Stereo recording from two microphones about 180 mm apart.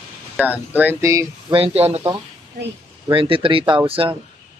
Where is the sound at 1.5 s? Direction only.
35° right (ahead or behind).